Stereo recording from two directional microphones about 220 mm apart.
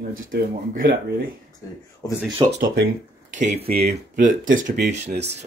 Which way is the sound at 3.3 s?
30° right (ahead or behind).